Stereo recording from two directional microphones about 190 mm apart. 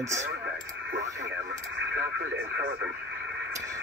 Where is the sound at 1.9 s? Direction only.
65° right (ahead or behind).